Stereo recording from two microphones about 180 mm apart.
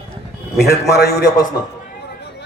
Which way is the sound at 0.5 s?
65° left (ahead or behind).